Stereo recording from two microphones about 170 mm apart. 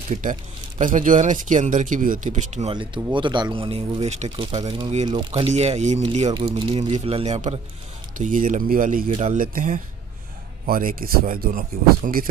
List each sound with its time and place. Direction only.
0.1 s speech: 50° right (ahead or behind)
2.7 s speech: 30° right (ahead or behind); by 12.3 s 55° right (ahead or behind)